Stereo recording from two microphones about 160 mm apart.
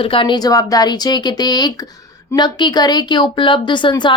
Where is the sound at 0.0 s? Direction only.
35° left (ahead or behind).